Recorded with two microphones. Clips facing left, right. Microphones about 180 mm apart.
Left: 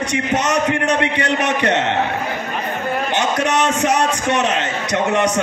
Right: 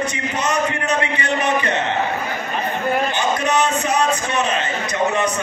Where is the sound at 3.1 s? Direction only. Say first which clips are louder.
Left 1 dB; 90° left.